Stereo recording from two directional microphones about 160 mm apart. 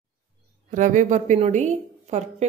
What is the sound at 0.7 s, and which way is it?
A woman's voice, 50° right (ahead or behind).